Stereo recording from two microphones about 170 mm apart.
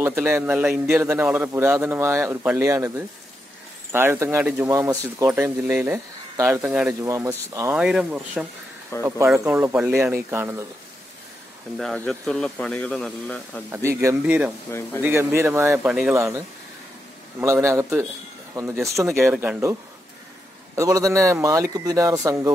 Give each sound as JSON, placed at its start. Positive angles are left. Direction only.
{"t": 0.0, "sound": "a man's voice", "side_deg": -15}
{"t": 7.7, "sound": "speech", "side_deg": -5}
{"t": 8.9, "sound": "speech", "side_deg": 15}
{"t": 9.4, "sound": "a man's voice", "side_deg": -15}
{"t": 11.7, "sound": "speech", "side_deg": 5}
{"t": 13.7, "sound": "a man's voice", "side_deg": -15}
{"t": 19.3, "sound": "speech", "side_deg": -5}
{"t": 20.7, "sound": "a man's voice", "side_deg": -20}